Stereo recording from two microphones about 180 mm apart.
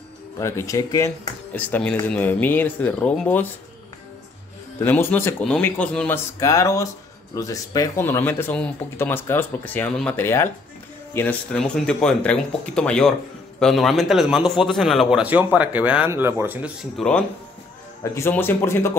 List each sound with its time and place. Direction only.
0.4 s speech: 15° left (ahead or behind)
4.7 s a man's voice: 10° left (ahead or behind); by 16.7 s 10° right (ahead or behind)
16.9 s a man's voice: 5° left (ahead or behind)